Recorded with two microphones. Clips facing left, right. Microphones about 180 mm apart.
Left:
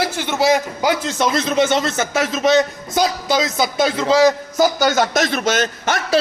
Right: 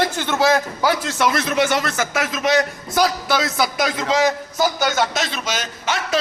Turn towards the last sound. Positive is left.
turn(degrees=50)  # may be behind; listen again after turning